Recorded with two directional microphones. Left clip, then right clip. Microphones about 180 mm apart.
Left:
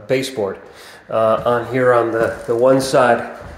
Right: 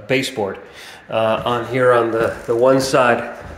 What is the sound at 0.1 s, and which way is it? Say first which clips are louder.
Speech: even; centre (ahead or behind).